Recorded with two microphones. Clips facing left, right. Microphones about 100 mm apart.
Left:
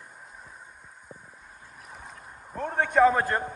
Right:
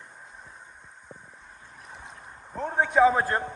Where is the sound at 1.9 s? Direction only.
5° left (ahead or behind).